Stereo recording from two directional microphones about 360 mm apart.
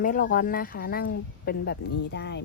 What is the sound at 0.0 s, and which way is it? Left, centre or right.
A woman's voice, left.